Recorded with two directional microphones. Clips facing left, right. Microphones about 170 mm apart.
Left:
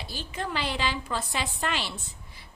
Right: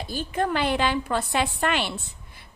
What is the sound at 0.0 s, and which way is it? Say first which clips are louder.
A woman's voice: right 8 dB; 50° right (ahead or behind).